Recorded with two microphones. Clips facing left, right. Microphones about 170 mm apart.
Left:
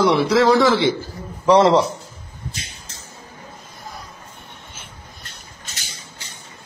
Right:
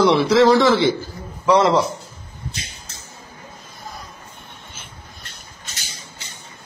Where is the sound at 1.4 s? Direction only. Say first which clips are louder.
Left 2 dB; 30° left (ahead or behind).